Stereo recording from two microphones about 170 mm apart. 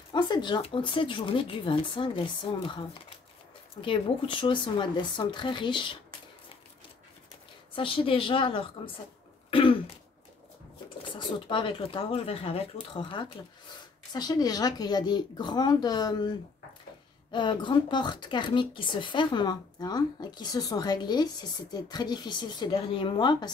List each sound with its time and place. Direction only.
0.1 s speech: 25° left (ahead or behind)
3.8 s speech: 30° left (ahead or behind)
7.7 s a woman's voice: 30° left (ahead or behind)
9.5 s throat clearing: 30° left (ahead or behind)
11.1 s speech: 30° left (ahead or behind)